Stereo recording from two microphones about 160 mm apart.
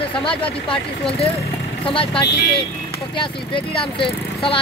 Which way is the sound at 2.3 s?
90° left.